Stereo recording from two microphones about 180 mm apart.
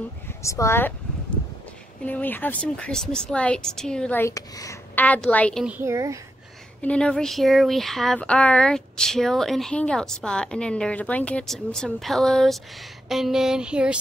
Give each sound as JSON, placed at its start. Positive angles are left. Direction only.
{"t": 0.4, "sound": "speech", "side_deg": 15}
{"t": 2.0, "sound": "speech", "side_deg": 10}
{"t": 5.7, "sound": "a woman's voice", "side_deg": -15}
{"t": 6.8, "sound": "speech", "side_deg": 5}